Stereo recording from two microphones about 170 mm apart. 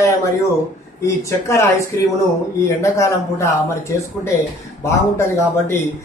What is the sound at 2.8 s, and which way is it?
Speech, 15° left (ahead or behind).